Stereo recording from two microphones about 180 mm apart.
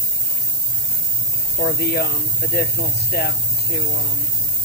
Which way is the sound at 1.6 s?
60° left (ahead or behind).